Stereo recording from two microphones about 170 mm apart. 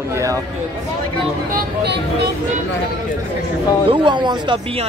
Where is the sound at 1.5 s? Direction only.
60° right (ahead or behind).